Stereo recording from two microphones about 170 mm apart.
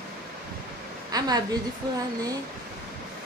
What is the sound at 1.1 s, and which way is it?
Speech, 20° right (ahead or behind).